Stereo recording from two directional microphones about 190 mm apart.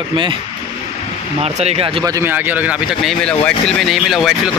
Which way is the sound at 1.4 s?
35° right (ahead or behind).